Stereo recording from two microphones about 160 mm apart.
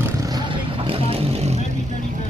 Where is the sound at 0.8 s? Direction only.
35° right (ahead or behind).